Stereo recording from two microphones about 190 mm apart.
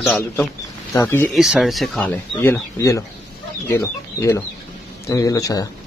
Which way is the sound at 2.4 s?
15° left (ahead or behind).